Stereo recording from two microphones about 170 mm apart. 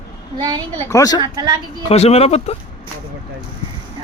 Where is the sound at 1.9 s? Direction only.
35° left (ahead or behind).